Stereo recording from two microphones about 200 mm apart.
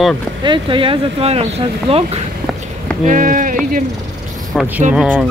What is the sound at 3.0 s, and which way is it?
Speech, 40° right (ahead or behind).